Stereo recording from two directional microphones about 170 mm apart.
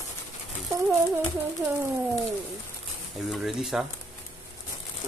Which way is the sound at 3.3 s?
Centre (ahead or behind).